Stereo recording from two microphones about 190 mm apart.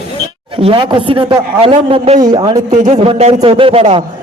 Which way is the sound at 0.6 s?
25° right (ahead or behind).